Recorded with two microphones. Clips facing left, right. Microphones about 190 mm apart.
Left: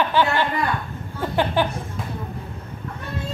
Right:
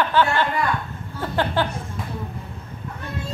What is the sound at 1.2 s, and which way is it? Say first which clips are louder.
Speech: left 2 dB; 15° left (ahead or behind).